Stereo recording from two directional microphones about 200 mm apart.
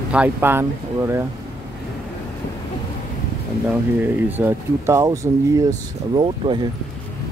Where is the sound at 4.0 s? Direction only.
10° right (ahead or behind).